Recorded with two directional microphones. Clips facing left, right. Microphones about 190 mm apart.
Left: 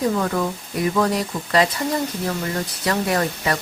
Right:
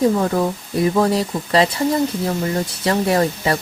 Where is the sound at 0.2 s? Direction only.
30° right (ahead or behind).